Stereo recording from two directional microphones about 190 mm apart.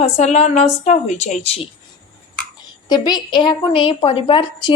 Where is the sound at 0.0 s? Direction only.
40° left (ahead or behind).